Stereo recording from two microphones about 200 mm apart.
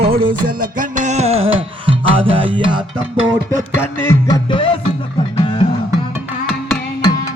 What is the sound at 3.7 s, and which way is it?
Music, 15° left (ahead or behind).